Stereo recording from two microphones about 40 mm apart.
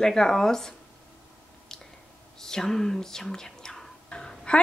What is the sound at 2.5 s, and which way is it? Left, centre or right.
Speech, centre.